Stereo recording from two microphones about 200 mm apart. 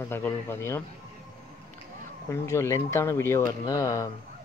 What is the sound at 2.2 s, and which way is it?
Speech, 15° left (ahead or behind).